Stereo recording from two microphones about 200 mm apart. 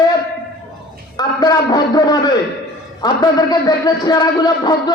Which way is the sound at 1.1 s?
20° left (ahead or behind).